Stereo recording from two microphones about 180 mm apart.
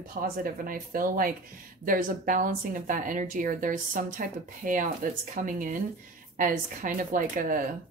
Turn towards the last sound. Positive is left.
turn(degrees=-45)  # may be behind; listen again after turning